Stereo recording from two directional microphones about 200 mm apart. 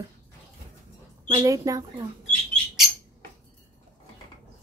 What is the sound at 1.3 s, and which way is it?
Speech, 15° right (ahead or behind).